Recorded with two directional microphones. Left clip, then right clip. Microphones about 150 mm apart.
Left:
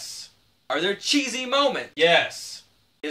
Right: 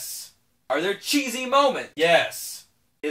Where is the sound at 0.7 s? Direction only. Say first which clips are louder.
Left 1 dB; 5° left (ahead or behind).